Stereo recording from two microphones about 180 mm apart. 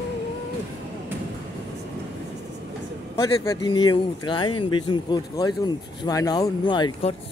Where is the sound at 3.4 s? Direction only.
25° left (ahead or behind).